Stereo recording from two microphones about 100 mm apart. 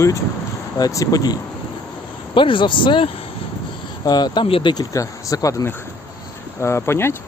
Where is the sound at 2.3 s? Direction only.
55° left (ahead or behind).